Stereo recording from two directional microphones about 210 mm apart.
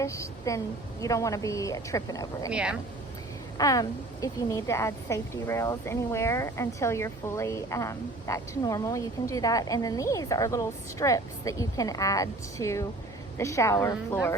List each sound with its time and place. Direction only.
0.0 s a woman's voice: 15° left (ahead or behind)
2.5 s speech: 5° right (ahead or behind)
3.6 s a woman's voice: 15° left (ahead or behind)